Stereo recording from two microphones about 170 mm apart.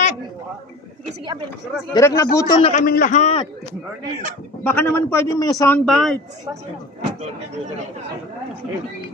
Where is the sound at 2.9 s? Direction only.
50° left (ahead or behind).